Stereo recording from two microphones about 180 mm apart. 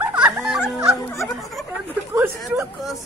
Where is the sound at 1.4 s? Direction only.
Centre (ahead or behind).